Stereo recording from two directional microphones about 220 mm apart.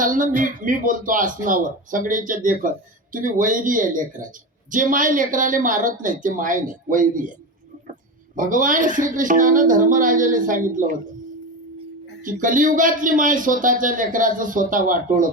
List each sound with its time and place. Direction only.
0.0 s speech: 35° right (ahead or behind)
8.4 s speech: 35° right (ahead or behind)
12.2 s speech: 35° right (ahead or behind)